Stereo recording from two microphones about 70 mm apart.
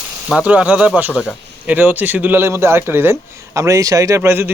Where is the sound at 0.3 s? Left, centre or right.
Centre; by 3.2 s right.